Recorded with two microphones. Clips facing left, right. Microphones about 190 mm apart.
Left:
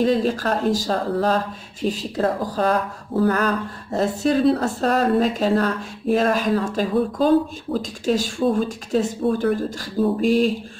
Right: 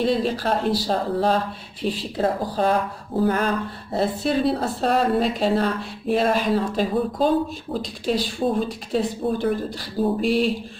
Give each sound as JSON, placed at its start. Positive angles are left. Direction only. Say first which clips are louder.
{"t": 0.0, "sound": "speech", "louder": "left 2 dB", "side_deg": 45}